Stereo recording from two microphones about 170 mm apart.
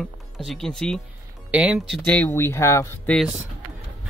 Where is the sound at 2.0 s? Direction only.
10° left (ahead or behind).